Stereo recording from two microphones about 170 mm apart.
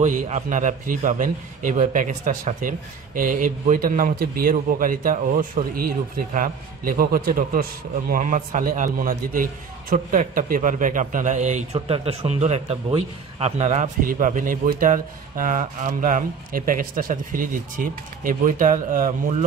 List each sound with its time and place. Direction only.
0.0 s a man's voice: 45° right (ahead or behind)